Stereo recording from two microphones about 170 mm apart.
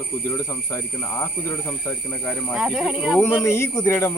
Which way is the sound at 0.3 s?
15° left (ahead or behind).